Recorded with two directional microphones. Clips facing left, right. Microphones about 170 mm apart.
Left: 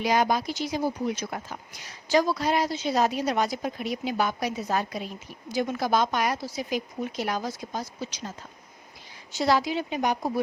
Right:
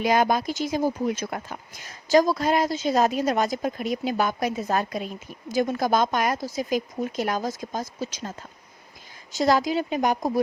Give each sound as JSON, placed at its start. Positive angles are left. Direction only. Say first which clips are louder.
{"t": 0.0, "sound": "speech", "louder": "right 3 dB", "side_deg": -50}
{"t": 9.3, "sound": "speech", "louder": "right 3 dB", "side_deg": -45}